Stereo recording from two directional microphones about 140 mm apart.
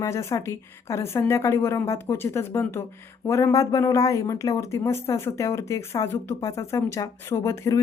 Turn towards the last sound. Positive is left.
turn(degrees=20)  # may be behind; listen again after turning